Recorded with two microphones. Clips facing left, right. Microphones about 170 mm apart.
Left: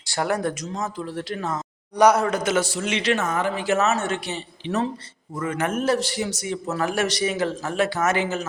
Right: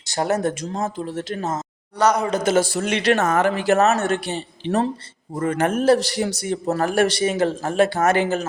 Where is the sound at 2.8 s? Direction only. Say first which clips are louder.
Right 4 dB; 50° right (ahead or behind).